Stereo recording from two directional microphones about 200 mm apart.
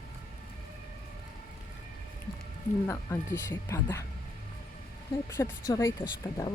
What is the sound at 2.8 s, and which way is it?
Speech, 15° left (ahead or behind).